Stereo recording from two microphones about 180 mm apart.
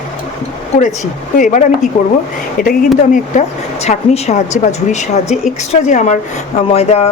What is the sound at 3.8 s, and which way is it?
A woman's voice, 40° left (ahead or behind).